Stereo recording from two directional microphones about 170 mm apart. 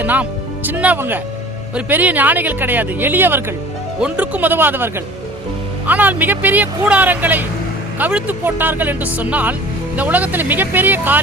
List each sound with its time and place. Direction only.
0.0 s speech: 10° right (ahead or behind)